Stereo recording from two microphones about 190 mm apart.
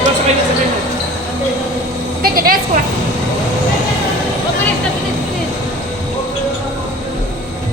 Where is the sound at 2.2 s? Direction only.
50° right (ahead or behind).